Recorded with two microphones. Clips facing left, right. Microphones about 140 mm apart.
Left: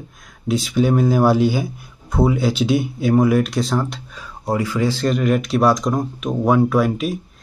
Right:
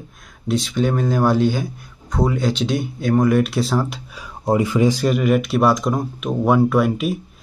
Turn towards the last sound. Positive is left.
turn(degrees=0)  # may be behind; listen again after turning